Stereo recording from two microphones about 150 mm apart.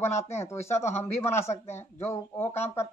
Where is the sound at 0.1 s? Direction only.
45° left (ahead or behind).